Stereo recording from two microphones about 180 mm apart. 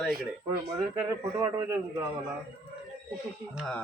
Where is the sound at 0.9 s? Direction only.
15° right (ahead or behind).